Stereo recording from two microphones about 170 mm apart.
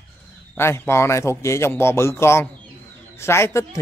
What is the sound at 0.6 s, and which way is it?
A man's voice, 15° left (ahead or behind).